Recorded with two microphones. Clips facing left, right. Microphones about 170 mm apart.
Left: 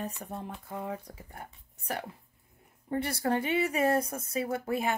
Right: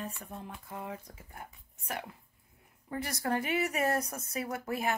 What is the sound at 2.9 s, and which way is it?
Speech, 30° left (ahead or behind).